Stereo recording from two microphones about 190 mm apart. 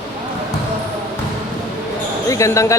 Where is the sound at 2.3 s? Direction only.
15° left (ahead or behind).